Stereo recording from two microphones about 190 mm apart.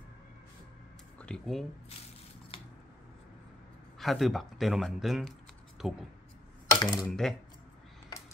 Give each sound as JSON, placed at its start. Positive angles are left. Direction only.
{"t": 1.1, "sound": "speech", "side_deg": 5}
{"t": 2.5, "sound": "scissors", "side_deg": 30}
{"t": 4.0, "sound": "speech", "side_deg": 0}
{"t": 6.8, "sound": "speech", "side_deg": 20}
{"t": 7.1, "sound": "speech", "side_deg": 0}